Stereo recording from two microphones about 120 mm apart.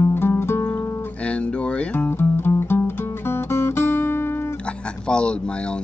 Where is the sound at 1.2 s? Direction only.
10° left (ahead or behind).